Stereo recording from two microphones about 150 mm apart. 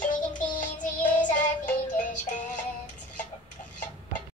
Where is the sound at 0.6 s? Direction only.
55° left (ahead or behind).